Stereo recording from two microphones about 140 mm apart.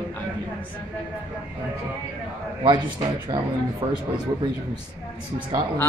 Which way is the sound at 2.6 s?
35° right (ahead or behind).